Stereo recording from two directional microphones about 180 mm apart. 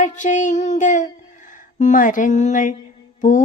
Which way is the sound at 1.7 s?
45° left (ahead or behind).